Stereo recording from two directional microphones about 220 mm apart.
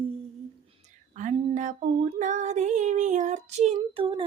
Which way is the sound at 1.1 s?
35° right (ahead or behind).